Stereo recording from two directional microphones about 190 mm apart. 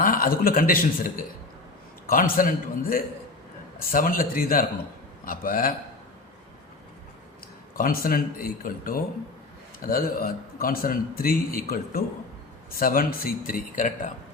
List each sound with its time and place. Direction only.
0.0 s a man's voice: 50° left (ahead or behind)
7.8 s a man's voice: 45° left (ahead or behind)